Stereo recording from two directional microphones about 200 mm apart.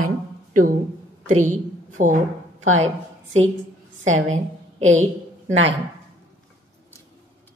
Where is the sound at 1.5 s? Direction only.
40° right (ahead or behind).